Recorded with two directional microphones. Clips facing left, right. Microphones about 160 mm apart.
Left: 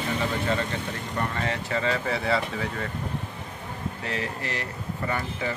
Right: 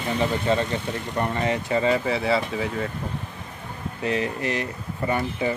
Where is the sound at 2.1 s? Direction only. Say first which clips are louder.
Right 3 dB; 5° right (ahead or behind).